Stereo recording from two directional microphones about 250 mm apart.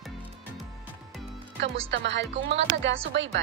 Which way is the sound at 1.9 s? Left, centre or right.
Right.